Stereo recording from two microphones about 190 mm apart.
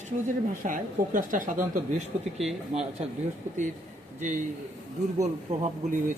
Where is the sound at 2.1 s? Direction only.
35° right (ahead or behind).